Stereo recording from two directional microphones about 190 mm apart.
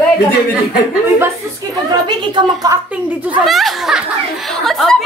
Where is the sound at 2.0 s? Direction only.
25° right (ahead or behind).